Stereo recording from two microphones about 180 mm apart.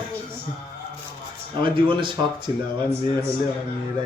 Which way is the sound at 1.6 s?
25° right (ahead or behind).